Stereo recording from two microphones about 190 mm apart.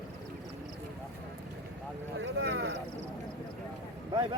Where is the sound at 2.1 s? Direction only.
65° right (ahead or behind).